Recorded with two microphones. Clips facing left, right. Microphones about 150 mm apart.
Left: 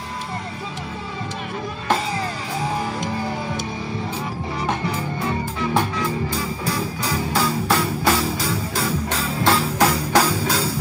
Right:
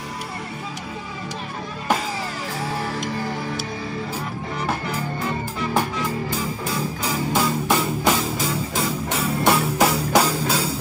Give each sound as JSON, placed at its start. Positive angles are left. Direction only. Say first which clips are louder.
{"t": 7.3, "sound": "music", "louder": "even", "side_deg": -15}